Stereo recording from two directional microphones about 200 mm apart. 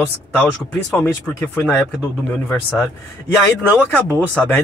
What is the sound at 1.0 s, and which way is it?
Speech, 10° left (ahead or behind).